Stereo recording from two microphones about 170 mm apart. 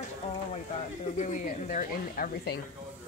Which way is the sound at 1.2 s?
50° left (ahead or behind).